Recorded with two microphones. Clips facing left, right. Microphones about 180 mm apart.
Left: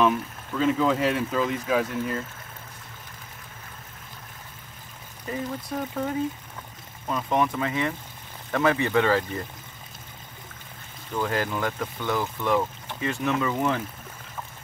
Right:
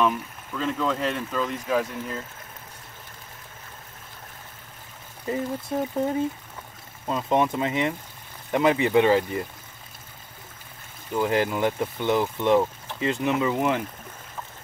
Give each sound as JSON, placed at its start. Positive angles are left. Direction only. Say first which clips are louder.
{"t": 0.6, "sound": "speech", "louder": "left 4 dB", "side_deg": 5}
{"t": 5.3, "sound": "speech", "louder": "right 3 dB", "side_deg": -25}
{"t": 11.1, "sound": "speech", "louder": "right 4 dB", "side_deg": -20}